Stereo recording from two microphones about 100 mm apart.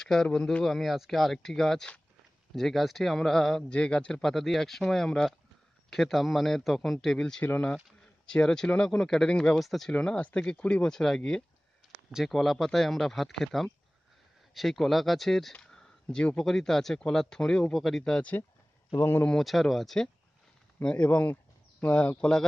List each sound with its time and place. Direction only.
0.0 s speech: 5° left (ahead or behind)
7.4 s speech: 15° left (ahead or behind)
18.9 s speech: 25° left (ahead or behind)
19.2 s speech: centre (ahead or behind)